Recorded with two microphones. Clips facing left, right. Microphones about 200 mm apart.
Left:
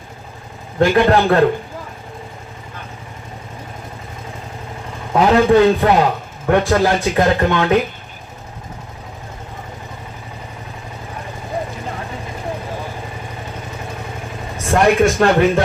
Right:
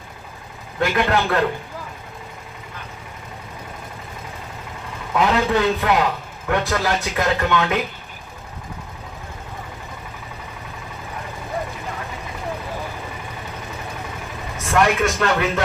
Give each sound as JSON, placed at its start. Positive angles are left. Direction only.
{"t": 0.8, "sound": "speech", "side_deg": 35}
{"t": 5.1, "sound": "speech", "side_deg": 35}
{"t": 14.7, "sound": "speech", "side_deg": 35}